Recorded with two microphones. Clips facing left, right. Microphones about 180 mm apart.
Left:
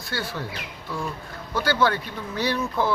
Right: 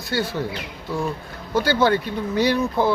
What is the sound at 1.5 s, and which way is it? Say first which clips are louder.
Speech: right 4 dB; 20° right (ahead or behind).